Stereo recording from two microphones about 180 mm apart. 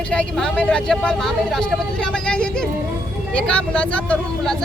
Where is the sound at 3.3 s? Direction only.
5° left (ahead or behind).